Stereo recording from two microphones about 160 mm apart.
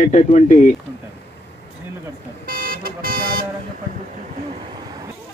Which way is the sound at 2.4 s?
65° right (ahead or behind).